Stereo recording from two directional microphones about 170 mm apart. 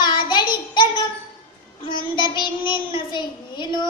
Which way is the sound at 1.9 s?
25° left (ahead or behind).